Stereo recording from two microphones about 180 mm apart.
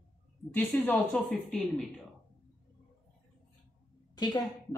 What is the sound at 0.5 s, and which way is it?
A woman's voice, 10° left (ahead or behind).